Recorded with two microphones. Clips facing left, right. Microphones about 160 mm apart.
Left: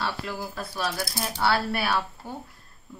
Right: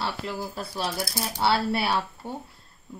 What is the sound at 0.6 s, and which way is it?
A woman's voice, 30° right (ahead or behind).